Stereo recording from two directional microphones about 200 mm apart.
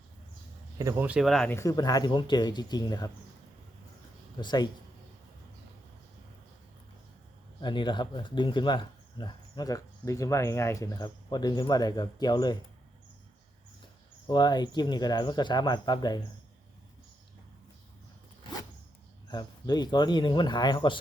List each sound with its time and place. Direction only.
0.8 s speech: 15° right (ahead or behind); by 3.1 s 20° left (ahead or behind)
4.4 s speech: 20° left (ahead or behind)
7.6 s speech: 25° left (ahead or behind)
14.3 s speech: 20° left (ahead or behind)
19.3 s speech: 20° left (ahead or behind)